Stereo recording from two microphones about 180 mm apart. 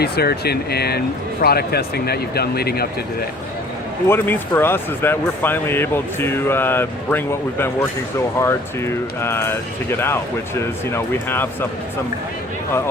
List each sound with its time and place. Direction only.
0.0 s speech: 60° left (ahead or behind)
4.1 s speech: 10° left (ahead or behind)